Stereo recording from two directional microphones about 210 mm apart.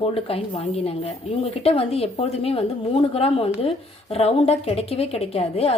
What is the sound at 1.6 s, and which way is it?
Speech, 30° left (ahead or behind).